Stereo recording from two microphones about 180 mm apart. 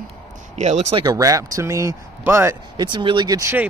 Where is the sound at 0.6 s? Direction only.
40° right (ahead or behind).